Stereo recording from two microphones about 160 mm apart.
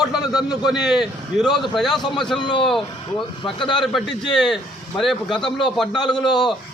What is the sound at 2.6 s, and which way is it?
Speech, centre (ahead or behind).